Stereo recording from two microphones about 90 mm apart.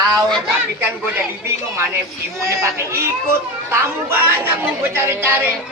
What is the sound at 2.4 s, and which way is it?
A man's voice, 30° right (ahead or behind).